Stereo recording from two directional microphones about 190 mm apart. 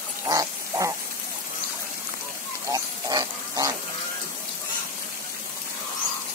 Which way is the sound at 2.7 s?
20° right (ahead or behind).